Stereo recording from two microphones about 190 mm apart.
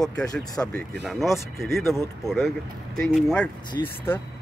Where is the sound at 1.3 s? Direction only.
15° left (ahead or behind).